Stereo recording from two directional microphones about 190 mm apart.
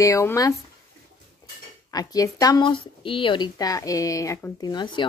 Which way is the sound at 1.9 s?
20° left (ahead or behind).